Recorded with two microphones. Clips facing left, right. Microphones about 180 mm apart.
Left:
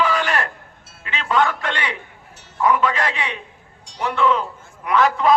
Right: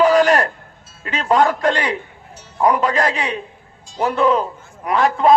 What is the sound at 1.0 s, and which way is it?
A man's voice, 40° right (ahead or behind).